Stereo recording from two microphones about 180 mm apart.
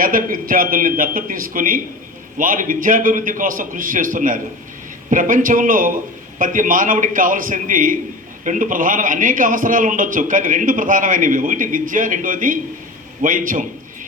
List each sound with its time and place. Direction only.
0.0 s a man's voice: 50° right (ahead or behind)